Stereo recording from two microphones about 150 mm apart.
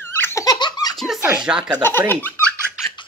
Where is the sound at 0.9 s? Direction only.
Centre (ahead or behind).